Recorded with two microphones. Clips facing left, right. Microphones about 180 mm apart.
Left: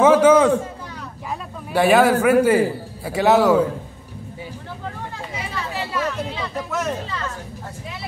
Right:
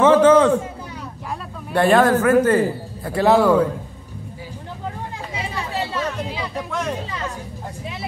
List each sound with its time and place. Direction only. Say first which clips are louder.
0.0 s a sound: even; 10° left (ahead or behind)
1.7 s a man's voice: even; 5° left (ahead or behind)
5.7 s chatter: even; 25° right (ahead or behind)
7.1 s speech: even; 15° right (ahead or behind)